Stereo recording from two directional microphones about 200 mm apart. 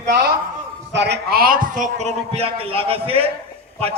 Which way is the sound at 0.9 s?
60° right (ahead or behind).